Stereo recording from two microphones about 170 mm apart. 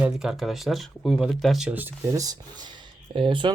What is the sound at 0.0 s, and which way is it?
Speech, centre (ahead or behind).